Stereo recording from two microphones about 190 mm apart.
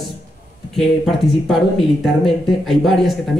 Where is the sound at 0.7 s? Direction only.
Centre (ahead or behind).